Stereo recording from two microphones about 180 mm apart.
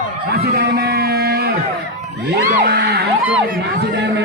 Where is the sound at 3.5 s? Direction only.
70° right (ahead or behind).